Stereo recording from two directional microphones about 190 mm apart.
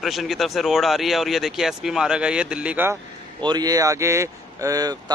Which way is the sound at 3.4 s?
20° right (ahead or behind).